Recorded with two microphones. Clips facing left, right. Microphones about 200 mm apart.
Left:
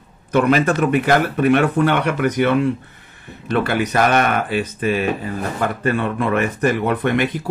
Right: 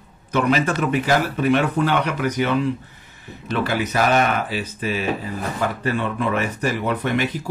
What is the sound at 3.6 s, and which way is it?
Speech, 55° left (ahead or behind).